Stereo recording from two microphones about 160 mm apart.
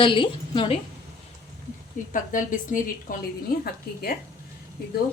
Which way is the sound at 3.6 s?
70° left (ahead or behind).